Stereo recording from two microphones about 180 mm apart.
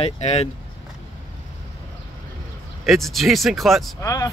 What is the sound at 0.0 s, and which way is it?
Speech, 35° left (ahead or behind).